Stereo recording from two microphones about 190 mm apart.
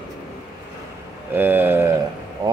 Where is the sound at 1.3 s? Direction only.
10° right (ahead or behind).